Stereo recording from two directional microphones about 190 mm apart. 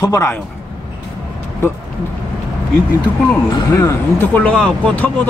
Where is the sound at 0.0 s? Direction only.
15° left (ahead or behind).